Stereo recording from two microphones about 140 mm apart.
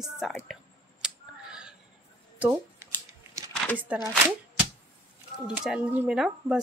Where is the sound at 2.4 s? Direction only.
20° right (ahead or behind).